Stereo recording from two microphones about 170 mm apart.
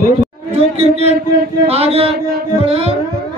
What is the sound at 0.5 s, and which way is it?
A man's voice, 35° right (ahead or behind).